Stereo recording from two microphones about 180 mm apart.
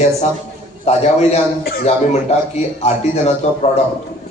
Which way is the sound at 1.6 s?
55° left (ahead or behind).